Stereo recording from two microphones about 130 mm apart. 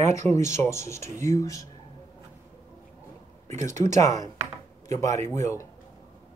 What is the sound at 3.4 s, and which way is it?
Speech, 70° right (ahead or behind).